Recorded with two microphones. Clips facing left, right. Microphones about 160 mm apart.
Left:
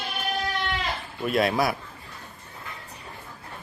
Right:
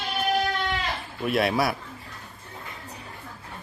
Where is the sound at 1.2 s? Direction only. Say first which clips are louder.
Even; centre (ahead or behind).